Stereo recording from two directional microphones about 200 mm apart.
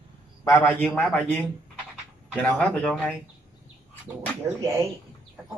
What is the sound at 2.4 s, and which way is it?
Speech, 5° left (ahead or behind).